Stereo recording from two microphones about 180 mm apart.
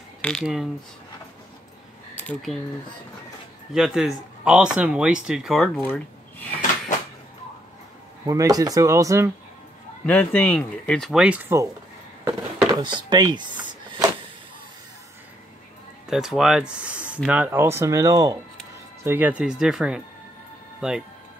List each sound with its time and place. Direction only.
0.2 s speech: centre (ahead or behind)
3.7 s speech: centre (ahead or behind)
8.3 s speech: 20° right (ahead or behind)
10.0 s speech: 10° left (ahead or behind); by 11.7 s 15° right (ahead or behind)
12.3 s a sound: 25° right (ahead or behind)
16.1 s speech: centre (ahead or behind)